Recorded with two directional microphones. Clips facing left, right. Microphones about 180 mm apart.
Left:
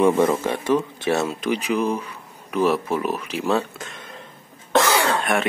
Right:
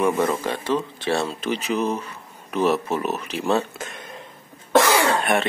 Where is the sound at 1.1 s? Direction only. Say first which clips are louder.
Left 2 dB; 10° left (ahead or behind).